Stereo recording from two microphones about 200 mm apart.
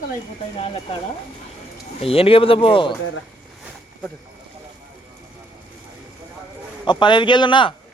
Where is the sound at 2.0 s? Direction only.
30° left (ahead or behind).